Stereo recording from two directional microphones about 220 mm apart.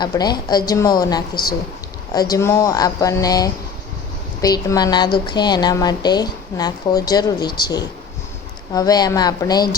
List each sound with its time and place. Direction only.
0.0 s a woman's voice: 20° left (ahead or behind)